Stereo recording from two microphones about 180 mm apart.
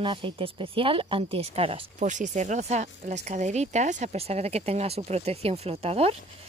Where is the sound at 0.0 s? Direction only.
30° right (ahead or behind).